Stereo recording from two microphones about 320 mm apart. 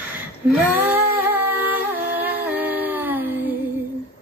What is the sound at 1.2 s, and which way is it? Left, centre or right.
Music, centre.